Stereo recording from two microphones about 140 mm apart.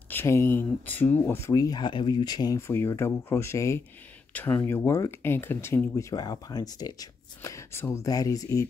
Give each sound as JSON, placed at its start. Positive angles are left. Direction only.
{"t": 0.1, "sound": "speech", "side_deg": 15}
{"t": 2.6, "sound": "speech", "side_deg": 20}